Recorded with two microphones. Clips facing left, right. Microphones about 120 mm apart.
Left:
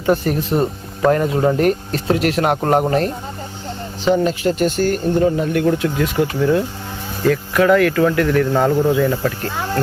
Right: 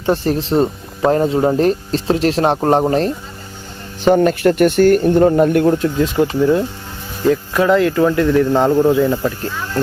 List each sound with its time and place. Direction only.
0.0 s speech: 30° right (ahead or behind)
4.0 s speech: 50° right (ahead or behind)
6.0 s speech: 20° right (ahead or behind)
9.5 s speech: 55° left (ahead or behind)